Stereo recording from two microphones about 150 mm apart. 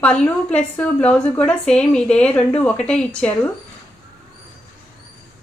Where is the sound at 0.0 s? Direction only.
10° left (ahead or behind).